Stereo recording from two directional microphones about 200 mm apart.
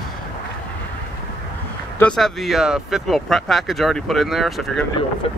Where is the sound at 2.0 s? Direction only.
5° left (ahead or behind).